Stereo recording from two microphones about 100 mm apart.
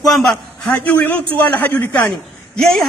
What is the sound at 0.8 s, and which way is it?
A man's voice, 15° left (ahead or behind).